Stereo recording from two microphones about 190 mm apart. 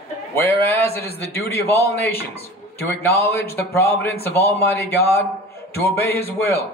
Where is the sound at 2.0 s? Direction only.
55° left (ahead or behind).